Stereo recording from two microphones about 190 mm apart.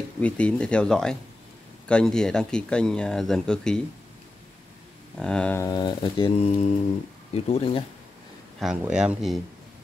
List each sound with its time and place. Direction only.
0.2 s speech: 5° left (ahead or behind)
5.1 s speech: 5° left (ahead or behind)
5.7 s speech: 25° left (ahead or behind)
8.5 s speech: 5° right (ahead or behind)